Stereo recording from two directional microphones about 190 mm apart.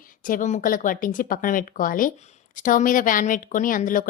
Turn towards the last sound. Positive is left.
turn(degrees=45)  # may be behind; listen again after turning